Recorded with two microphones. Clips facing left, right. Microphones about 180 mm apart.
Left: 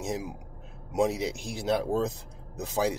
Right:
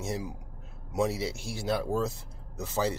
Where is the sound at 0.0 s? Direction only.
15° left (ahead or behind).